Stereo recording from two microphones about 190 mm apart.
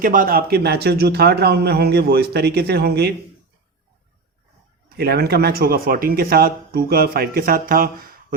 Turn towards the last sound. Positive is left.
turn(degrees=-50)  # may be behind; listen again after turning